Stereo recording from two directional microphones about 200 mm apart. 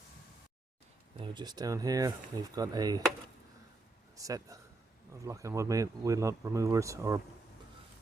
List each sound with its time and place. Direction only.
1.2 s speech: 20° right (ahead or behind)
4.2 s speech: 15° right (ahead or behind)